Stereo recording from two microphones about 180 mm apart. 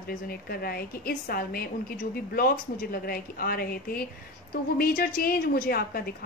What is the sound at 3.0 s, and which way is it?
A woman's voice, 55° left (ahead or behind).